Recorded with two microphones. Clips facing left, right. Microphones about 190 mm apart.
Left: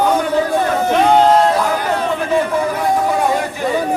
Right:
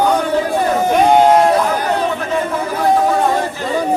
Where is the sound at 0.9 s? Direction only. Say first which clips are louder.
Right 1 dB; 15° right (ahead or behind).